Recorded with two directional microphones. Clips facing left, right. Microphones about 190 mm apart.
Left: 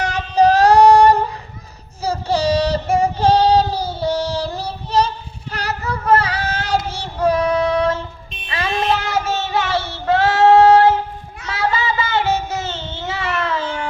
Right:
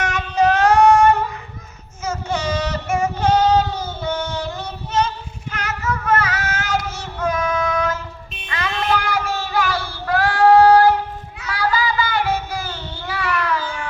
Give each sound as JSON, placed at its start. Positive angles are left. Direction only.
{"t": 0.0, "sound": "female singing", "side_deg": 35}
{"t": 2.0, "sound": "child singing", "side_deg": 35}
{"t": 11.4, "sound": "a sound", "side_deg": 25}